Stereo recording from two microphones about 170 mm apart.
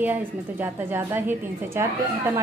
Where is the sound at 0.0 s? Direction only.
10° right (ahead or behind).